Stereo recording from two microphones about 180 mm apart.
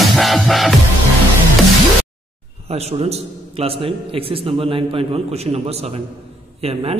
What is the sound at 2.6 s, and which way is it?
A man's voice, 35° right (ahead or behind).